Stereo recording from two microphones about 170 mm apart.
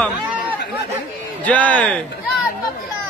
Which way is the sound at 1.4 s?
10° left (ahead or behind).